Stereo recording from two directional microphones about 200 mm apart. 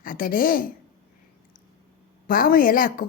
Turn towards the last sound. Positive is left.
turn(degrees=45)  # may be behind; listen again after turning